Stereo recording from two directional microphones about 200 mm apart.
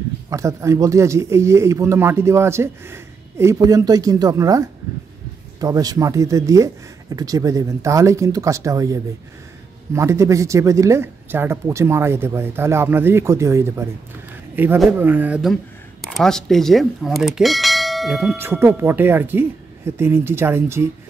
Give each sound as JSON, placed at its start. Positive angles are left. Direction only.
{"t": 0.3, "sound": "speech", "side_deg": -15}